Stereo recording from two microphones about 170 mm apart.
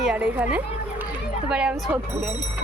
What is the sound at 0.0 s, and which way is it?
A woman's voice, 5° right (ahead or behind).